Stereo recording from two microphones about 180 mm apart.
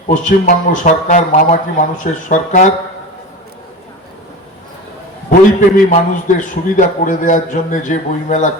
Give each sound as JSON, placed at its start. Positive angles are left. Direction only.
{"t": 0.1, "sound": "a man's voice", "side_deg": 45}
{"t": 5.5, "sound": "a man's voice", "side_deg": 45}